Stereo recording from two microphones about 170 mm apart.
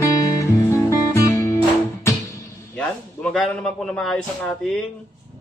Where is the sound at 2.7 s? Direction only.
5° left (ahead or behind).